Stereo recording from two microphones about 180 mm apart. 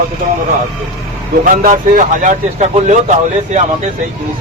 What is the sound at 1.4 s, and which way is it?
Speech, 50° right (ahead or behind).